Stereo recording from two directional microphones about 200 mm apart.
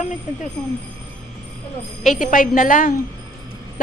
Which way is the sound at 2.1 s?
40° left (ahead or behind).